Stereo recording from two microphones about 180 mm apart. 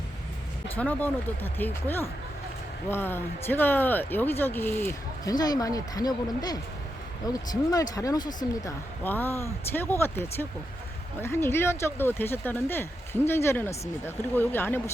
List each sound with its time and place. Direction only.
0.8 s speech: 10° left (ahead or behind)
8.6 s speech: 10° left (ahead or behind)